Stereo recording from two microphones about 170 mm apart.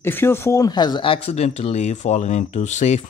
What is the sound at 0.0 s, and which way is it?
Speech, 15° left (ahead or behind).